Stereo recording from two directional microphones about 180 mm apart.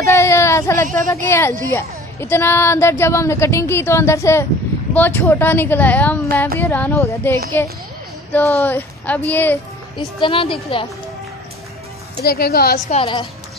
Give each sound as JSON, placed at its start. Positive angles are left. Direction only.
{"t": 0.0, "sound": "a woman's voice", "side_deg": 15}
{"t": 9.9, "sound": "speech", "side_deg": 30}
{"t": 12.2, "sound": "a woman's voice", "side_deg": 60}
{"t": 12.9, "sound": "a woman's voice", "side_deg": 30}